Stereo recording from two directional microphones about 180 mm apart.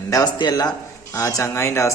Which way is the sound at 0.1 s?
20° left (ahead or behind).